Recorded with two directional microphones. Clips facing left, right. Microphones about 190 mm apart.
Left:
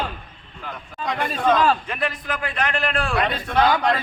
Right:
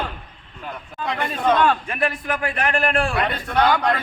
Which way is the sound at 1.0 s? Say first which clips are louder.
Even; 5° right (ahead or behind).